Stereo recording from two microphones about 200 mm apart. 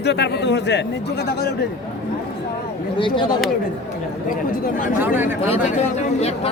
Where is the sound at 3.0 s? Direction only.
25° left (ahead or behind).